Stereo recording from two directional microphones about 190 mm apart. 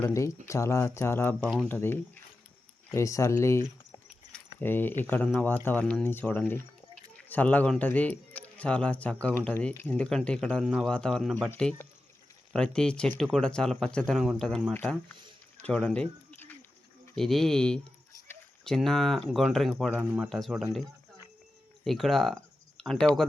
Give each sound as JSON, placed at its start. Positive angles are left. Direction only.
{"t": 0.0, "sound": "speech", "side_deg": 15}
{"t": 15.6, "sound": "bird", "side_deg": 5}
{"t": 17.2, "sound": "speech", "side_deg": 0}
{"t": 19.9, "sound": "speech", "side_deg": -10}
{"t": 21.8, "sound": "speech", "side_deg": 0}